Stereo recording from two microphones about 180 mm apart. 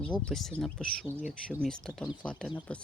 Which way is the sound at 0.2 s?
5° left (ahead or behind).